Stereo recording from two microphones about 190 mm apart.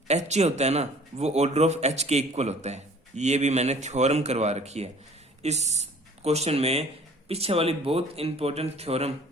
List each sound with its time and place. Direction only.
0.1 s speech: 35° right (ahead or behind)